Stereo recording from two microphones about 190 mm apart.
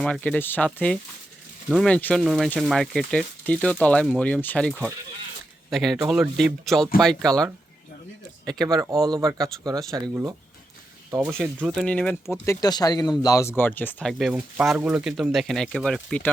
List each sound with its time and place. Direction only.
0.0 s speech: 5° left (ahead or behind)
2.2 s speech: 5° right (ahead or behind)
8.4 s speech: 20° right (ahead or behind)
11.3 s speech: centre (ahead or behind)